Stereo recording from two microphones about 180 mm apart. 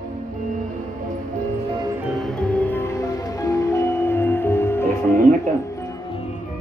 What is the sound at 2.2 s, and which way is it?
Music, 5° left (ahead or behind).